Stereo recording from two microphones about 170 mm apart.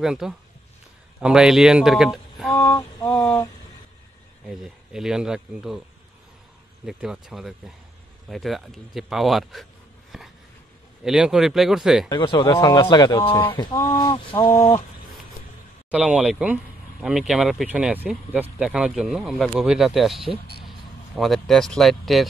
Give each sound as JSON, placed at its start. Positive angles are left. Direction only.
{"t": 0.0, "sound": "speech", "side_deg": -5}
{"t": 2.6, "sound": "a sound", "side_deg": 15}
{"t": 4.5, "sound": "speech", "side_deg": -5}
{"t": 6.9, "sound": "speech", "side_deg": -5}
{"t": 12.1, "sound": "a man's voice", "side_deg": 30}
{"t": 15.9, "sound": "speech", "side_deg": -5}
{"t": 21.2, "sound": "speech", "side_deg": 0}